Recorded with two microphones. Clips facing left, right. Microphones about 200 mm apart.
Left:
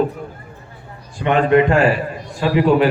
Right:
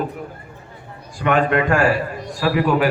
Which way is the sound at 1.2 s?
25° left (ahead or behind).